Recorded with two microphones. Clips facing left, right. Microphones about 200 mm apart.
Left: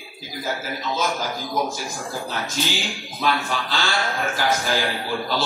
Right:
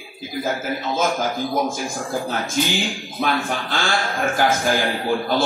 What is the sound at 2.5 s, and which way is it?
Speech, 50° right (ahead or behind).